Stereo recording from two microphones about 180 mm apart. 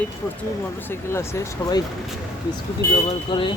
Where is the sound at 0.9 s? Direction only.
15° left (ahead or behind).